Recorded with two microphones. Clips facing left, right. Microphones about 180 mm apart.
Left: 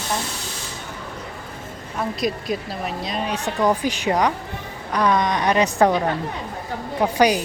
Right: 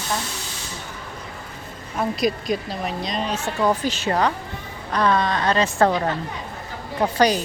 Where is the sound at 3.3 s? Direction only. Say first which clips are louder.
Left 2 dB; 15° left (ahead or behind).